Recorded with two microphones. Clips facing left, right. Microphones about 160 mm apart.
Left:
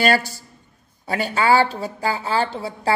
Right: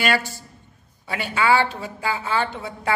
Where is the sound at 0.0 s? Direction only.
40° left (ahead or behind).